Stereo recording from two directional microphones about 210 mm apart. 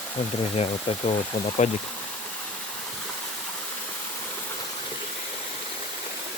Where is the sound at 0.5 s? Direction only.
30° left (ahead or behind).